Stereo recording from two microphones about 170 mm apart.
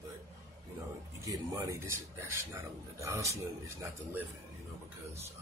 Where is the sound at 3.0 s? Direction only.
20° right (ahead or behind).